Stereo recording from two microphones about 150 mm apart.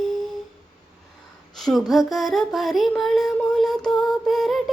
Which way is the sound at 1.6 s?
Centre (ahead or behind).